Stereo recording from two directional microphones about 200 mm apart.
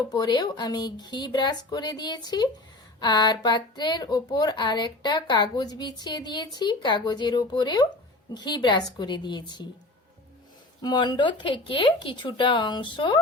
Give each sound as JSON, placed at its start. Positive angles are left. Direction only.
{"t": 0.1, "sound": "speech", "side_deg": 20}
{"t": 10.8, "sound": "speech", "side_deg": 20}